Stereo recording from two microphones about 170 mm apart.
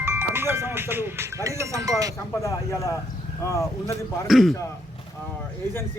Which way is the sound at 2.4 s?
20° left (ahead or behind).